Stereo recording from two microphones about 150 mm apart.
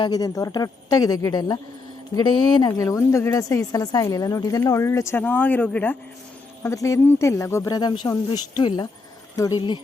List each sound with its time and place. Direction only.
0.0 s a woman's voice: 25° left (ahead or behind)